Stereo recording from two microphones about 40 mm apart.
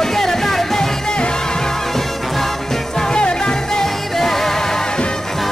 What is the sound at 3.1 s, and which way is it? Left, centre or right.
Music, left.